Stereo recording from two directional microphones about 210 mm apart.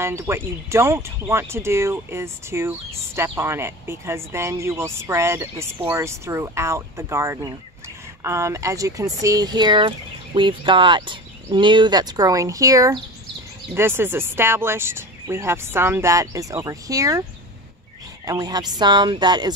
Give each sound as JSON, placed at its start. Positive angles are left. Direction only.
{"t": 0.0, "sound": "speech", "side_deg": -10}
{"t": 18.2, "sound": "speech", "side_deg": -20}